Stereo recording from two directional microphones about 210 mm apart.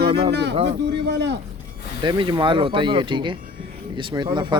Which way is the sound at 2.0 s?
20° right (ahead or behind).